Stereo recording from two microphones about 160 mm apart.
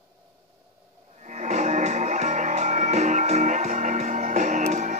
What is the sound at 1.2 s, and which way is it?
Music, 50° right (ahead or behind).